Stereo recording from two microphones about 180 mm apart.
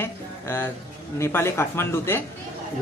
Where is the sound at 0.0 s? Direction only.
15° left (ahead or behind).